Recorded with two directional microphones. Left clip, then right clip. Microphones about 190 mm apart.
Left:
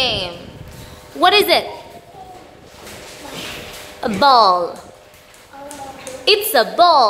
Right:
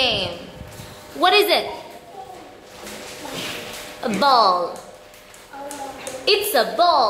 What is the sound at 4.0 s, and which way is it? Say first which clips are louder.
Speech: left 4 dB; 30° left (ahead or behind).